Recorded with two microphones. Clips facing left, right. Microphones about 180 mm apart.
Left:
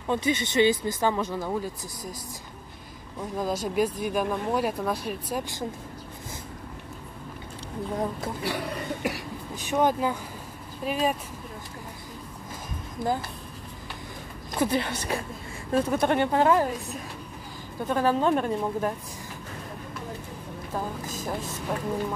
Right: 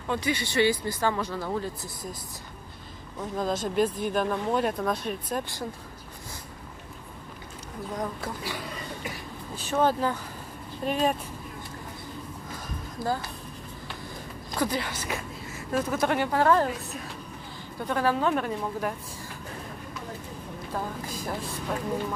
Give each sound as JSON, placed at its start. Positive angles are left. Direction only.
{"t": 0.1, "sound": "speech", "side_deg": 20}
{"t": 3.3, "sound": "speech", "side_deg": 10}
{"t": 7.9, "sound": "speech", "side_deg": 25}
{"t": 8.4, "sound": "speech", "side_deg": 65}
{"t": 9.6, "sound": "speech", "side_deg": 15}
{"t": 13.0, "sound": "speech", "side_deg": 20}
{"t": 14.5, "sound": "speech", "side_deg": 25}
{"t": 17.8, "sound": "speech", "side_deg": 15}